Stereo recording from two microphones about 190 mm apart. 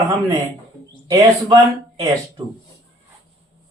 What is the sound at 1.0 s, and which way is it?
Speech, 20° right (ahead or behind).